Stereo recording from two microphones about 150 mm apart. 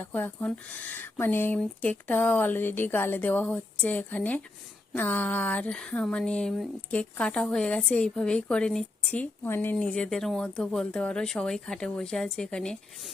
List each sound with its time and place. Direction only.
0.0 s speech: 15° left (ahead or behind)